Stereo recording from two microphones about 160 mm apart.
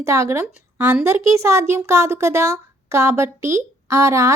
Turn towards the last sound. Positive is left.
turn(degrees=-20)  # may be behind; listen again after turning